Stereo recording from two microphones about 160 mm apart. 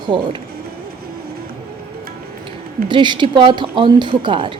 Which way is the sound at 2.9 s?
30° right (ahead or behind).